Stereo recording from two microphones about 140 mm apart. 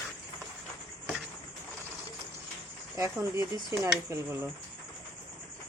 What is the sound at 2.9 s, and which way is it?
Speech, 25° right (ahead or behind).